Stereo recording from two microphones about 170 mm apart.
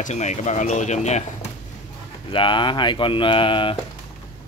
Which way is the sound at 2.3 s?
30° left (ahead or behind).